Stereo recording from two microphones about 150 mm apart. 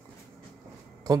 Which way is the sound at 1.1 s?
25° right (ahead or behind).